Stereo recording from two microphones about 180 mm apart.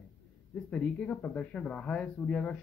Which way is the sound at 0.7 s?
5° left (ahead or behind).